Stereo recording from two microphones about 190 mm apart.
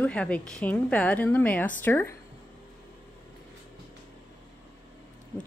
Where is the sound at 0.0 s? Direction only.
5° left (ahead or behind).